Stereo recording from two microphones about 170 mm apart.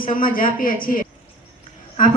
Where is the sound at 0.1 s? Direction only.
55° left (ahead or behind).